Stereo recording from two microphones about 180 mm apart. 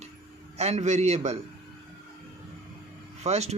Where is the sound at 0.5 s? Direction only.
35° right (ahead or behind).